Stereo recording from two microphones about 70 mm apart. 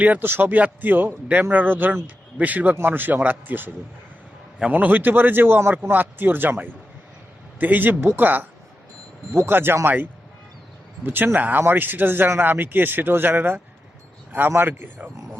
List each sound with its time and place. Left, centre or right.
0.0 s a man's voice: right
4.7 s a man's voice: right
14.7 s a man's voice: right